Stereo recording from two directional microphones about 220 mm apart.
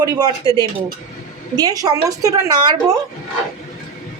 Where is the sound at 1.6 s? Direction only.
15° right (ahead or behind).